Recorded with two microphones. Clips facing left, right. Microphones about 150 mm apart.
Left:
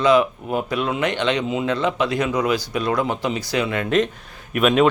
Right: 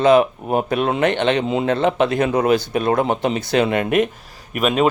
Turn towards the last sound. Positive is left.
turn(degrees=0)  # may be behind; listen again after turning